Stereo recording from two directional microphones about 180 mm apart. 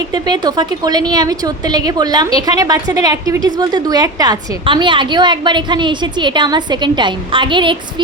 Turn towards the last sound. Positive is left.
turn(degrees=-25)  # may be behind; listen again after turning